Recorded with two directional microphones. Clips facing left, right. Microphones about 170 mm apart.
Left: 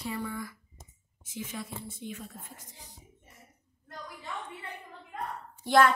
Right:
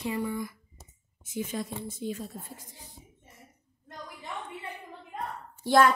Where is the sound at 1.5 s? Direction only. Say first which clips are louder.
Right 5 dB; 40° right (ahead or behind).